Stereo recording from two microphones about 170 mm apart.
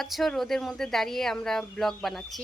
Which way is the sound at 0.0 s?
Centre (ahead or behind).